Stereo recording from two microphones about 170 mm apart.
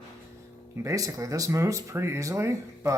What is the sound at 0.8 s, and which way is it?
Speech, 20° right (ahead or behind).